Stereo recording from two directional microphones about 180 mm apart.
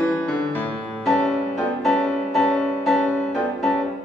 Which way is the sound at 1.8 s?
Centre (ahead or behind).